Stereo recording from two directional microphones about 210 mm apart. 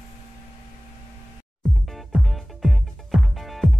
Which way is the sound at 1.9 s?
Centre (ahead or behind).